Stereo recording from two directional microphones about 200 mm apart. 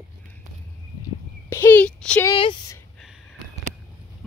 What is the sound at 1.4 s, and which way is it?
Speech, 10° left (ahead or behind).